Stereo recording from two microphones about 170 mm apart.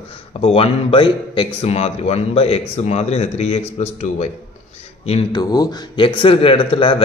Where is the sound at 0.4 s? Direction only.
35° left (ahead or behind).